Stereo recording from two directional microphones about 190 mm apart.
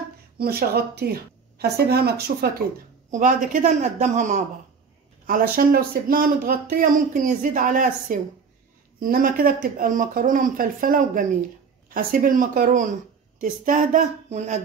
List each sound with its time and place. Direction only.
0.4 s speech: 55° right (ahead or behind)
3.1 s a man's voice: 45° right (ahead or behind)